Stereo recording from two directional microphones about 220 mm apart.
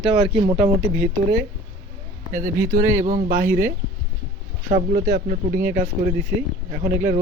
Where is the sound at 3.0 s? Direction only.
35° right (ahead or behind).